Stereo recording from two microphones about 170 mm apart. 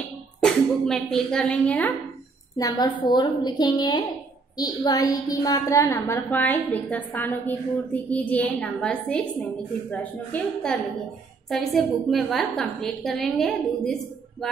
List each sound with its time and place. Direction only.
0.4 s speech: 5° left (ahead or behind)
2.5 s a woman's voice: 25° left (ahead or behind); by 13.9 s centre (ahead or behind)